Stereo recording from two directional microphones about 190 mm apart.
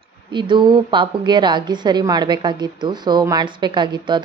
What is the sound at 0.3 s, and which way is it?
A woman's voice, 25° right (ahead or behind).